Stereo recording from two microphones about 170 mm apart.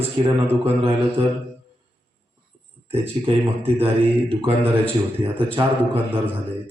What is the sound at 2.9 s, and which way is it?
A man's voice, 35° right (ahead or behind).